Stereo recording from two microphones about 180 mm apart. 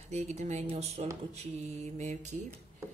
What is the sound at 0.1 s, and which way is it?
Speech, 40° right (ahead or behind).